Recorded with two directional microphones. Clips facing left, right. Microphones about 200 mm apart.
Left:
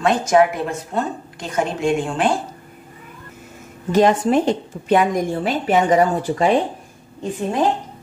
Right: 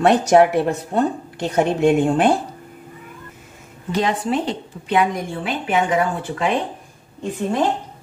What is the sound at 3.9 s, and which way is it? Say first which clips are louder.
A woman's voice: left 6 dB; 45° left (ahead or behind).